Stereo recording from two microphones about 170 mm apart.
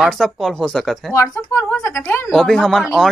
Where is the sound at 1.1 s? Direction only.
20° left (ahead or behind).